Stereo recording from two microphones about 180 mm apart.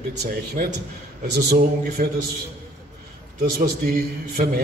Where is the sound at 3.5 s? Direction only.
55° right (ahead or behind).